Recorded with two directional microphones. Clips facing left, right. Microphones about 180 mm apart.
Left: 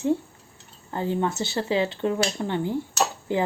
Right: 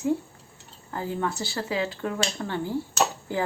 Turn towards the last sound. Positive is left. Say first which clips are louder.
# left 2 dB
turn(degrees=20)  # may be behind; listen again after turning